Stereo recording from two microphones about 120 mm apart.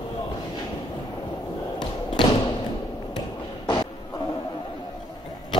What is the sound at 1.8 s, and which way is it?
Thump, 40° left (ahead or behind).